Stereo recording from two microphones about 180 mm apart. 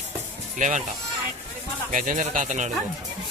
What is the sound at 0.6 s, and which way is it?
Speech, 45° right (ahead or behind).